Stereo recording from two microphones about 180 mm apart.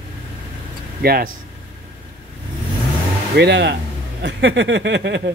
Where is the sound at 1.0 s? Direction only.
55° right (ahead or behind).